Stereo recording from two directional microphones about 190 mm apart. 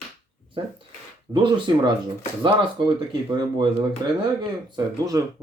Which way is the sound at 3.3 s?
25° right (ahead or behind).